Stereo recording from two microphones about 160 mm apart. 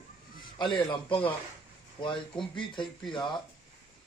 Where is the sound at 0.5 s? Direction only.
30° left (ahead or behind).